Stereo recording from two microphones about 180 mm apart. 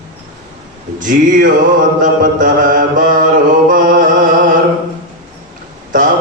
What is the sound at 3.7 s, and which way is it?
Chant, 50° right (ahead or behind).